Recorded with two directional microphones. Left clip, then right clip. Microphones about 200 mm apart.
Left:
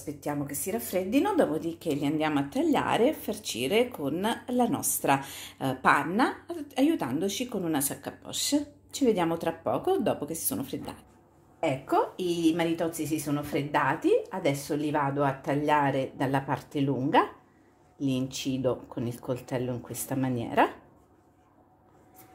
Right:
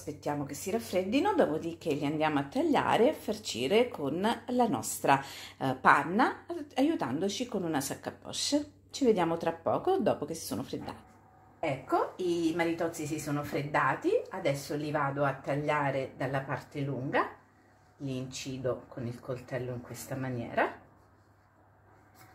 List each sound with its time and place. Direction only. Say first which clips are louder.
0.0 s a woman's voice: left 2 dB; centre (ahead or behind)
11.6 s speech: left 4 dB; 40° left (ahead or behind)